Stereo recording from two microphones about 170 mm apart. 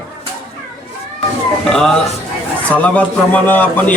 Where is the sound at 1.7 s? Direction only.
5° left (ahead or behind).